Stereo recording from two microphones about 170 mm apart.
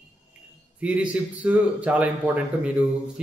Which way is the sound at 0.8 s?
10° right (ahead or behind).